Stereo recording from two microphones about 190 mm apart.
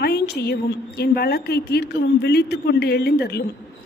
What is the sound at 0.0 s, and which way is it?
A woman's voice, 60° left (ahead or behind).